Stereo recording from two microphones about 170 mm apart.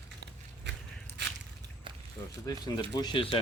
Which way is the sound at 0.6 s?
90° right.